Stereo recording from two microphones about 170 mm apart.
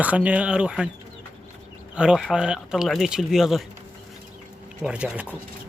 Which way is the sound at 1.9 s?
5° right (ahead or behind).